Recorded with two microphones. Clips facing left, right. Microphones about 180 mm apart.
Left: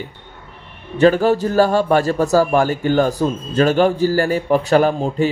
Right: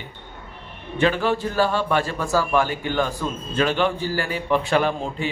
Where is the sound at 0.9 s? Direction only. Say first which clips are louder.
Left 7 dB; 40° left (ahead or behind).